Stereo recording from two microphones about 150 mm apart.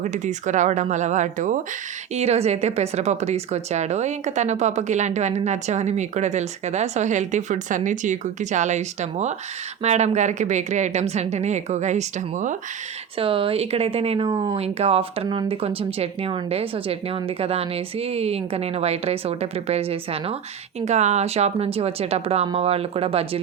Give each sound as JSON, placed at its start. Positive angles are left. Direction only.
{"t": 0.0, "sound": "a woman's voice", "side_deg": -55}
{"t": 2.1, "sound": "a woman's voice", "side_deg": -45}
{"t": 13.1, "sound": "a woman's voice", "side_deg": -35}